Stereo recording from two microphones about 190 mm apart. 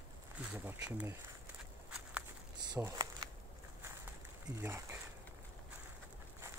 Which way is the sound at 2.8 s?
15° right (ahead or behind).